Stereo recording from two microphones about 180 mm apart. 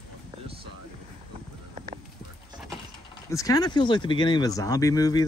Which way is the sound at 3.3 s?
20° left (ahead or behind).